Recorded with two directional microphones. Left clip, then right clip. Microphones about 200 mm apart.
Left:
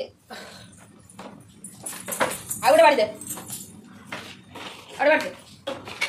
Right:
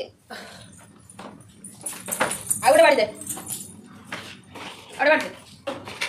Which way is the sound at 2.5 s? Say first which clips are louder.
Even; 10° right (ahead or behind).